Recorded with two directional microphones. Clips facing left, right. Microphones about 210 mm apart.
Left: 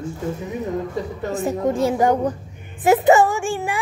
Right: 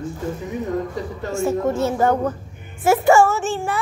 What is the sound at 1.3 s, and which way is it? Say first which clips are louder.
A child's voice: right 1 dB; 15° left (ahead or behind).